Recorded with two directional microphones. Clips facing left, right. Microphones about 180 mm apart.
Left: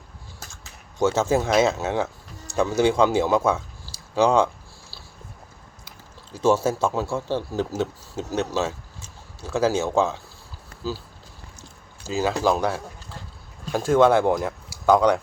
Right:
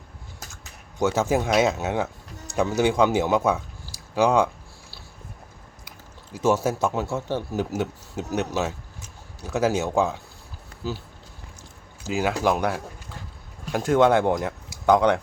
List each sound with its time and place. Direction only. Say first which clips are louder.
1.0 s speech: left 1 dB; 15° right (ahead or behind)
6.3 s speech: left 2 dB; 15° right (ahead or behind)
12.0 s speech: left 1 dB; 15° right (ahead or behind)